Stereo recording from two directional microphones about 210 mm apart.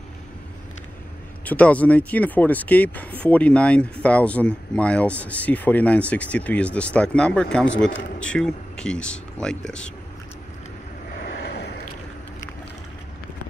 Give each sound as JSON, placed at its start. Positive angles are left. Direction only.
{"t": 1.4, "sound": "speech", "side_deg": 5}
{"t": 11.2, "sound": "vehicle", "side_deg": 50}